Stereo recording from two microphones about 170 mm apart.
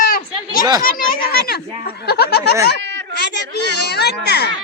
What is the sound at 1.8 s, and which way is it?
Speech, 70° left (ahead or behind).